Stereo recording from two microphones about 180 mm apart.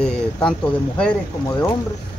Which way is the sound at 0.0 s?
5° left (ahead or behind).